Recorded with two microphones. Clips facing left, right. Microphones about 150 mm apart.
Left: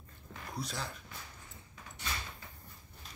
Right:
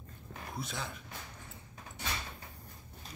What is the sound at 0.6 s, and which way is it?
Speech, centre (ahead or behind).